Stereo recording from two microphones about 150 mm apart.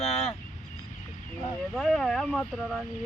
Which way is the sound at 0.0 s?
45° left (ahead or behind).